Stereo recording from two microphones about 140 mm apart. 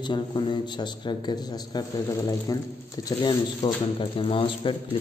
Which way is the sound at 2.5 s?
25° left (ahead or behind).